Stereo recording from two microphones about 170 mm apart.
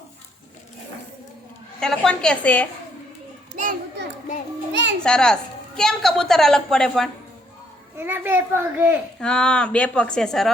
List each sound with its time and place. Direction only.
1.8 s a woman's voice: 5° left (ahead or behind)
3.5 s children playing: 50° right (ahead or behind)
4.7 s music: 90° right
5.0 s a woman's voice: 5° left (ahead or behind)
7.9 s a child's voice: 10° right (ahead or behind)
9.2 s a woman's voice: 5° left (ahead or behind)